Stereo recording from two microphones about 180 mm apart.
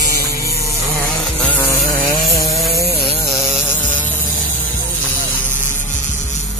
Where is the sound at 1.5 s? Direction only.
15° left (ahead or behind).